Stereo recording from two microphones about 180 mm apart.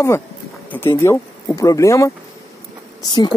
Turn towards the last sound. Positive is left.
turn(degrees=25)  # may be behind; listen again after turning